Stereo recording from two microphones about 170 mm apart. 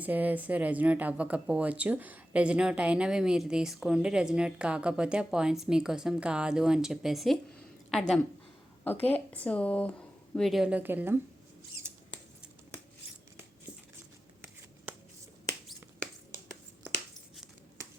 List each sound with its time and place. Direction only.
0.0 s a woman's voice: 10° right (ahead or behind)